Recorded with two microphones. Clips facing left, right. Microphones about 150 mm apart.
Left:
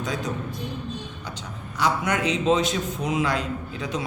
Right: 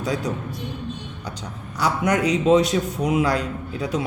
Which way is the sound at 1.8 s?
35° right (ahead or behind).